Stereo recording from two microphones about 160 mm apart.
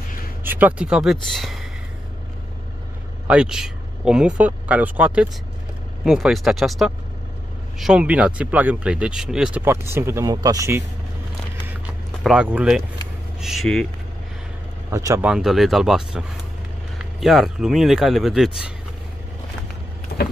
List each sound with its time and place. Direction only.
0.4 s speech: 10° right (ahead or behind)
3.3 s speech: 5° right (ahead or behind)
9.7 s speech: 15° right (ahead or behind)
12.2 s speech: 5° right (ahead or behind)
14.9 s speech: 20° right (ahead or behind)
15.2 s speech: 5° right (ahead or behind)